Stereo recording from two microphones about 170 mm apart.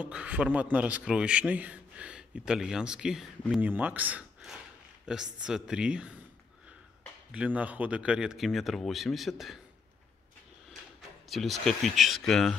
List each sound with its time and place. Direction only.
0.0 s a man's voice: 5° right (ahead or behind)
7.3 s speech: 10° right (ahead or behind)
10.7 s speech: centre (ahead or behind)